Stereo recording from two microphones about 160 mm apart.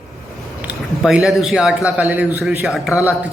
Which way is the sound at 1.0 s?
Centre (ahead or behind).